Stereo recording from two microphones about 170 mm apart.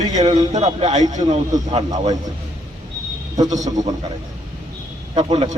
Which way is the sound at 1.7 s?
20° right (ahead or behind).